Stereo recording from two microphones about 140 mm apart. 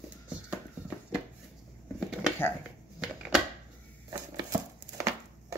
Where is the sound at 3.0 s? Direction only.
5° right (ahead or behind).